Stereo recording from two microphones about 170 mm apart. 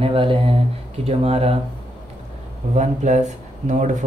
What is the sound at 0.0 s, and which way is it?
Speech, 30° right (ahead or behind).